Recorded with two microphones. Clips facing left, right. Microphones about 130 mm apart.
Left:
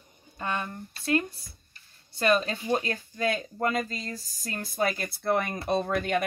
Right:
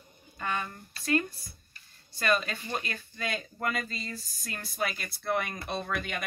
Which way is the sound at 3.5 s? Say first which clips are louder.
Left 3 dB; 25° left (ahead or behind).